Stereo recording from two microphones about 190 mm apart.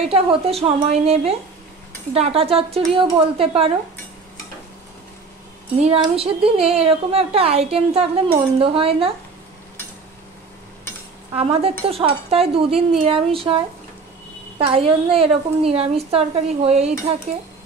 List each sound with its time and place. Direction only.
0.1 s speech: 30° right (ahead or behind)
5.8 s speech: 30° right (ahead or behind)
11.3 s speech: 30° right (ahead or behind)
14.6 s speech: 30° right (ahead or behind)